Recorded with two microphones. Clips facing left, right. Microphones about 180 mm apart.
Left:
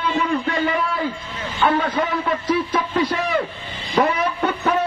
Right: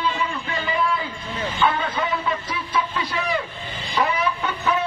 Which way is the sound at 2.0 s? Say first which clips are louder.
Left 3 dB; 45° left (ahead or behind).